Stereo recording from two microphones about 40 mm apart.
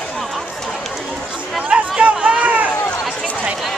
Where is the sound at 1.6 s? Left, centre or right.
Right.